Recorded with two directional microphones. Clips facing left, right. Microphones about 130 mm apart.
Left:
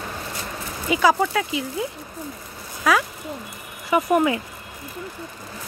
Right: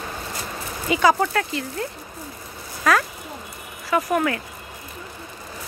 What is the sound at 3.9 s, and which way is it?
Speech, 15° left (ahead or behind).